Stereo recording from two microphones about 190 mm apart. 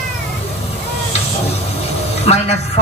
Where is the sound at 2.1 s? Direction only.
35° left (ahead or behind).